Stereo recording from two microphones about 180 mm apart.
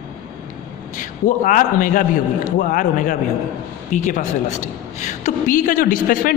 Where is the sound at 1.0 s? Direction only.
45° left (ahead or behind).